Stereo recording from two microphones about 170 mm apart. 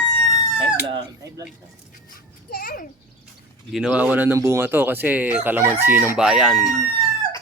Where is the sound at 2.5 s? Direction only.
60° left (ahead or behind).